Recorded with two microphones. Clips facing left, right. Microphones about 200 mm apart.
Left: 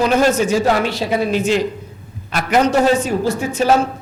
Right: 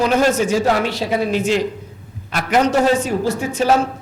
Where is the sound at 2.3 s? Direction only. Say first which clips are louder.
Left 1 dB; 20° left (ahead or behind).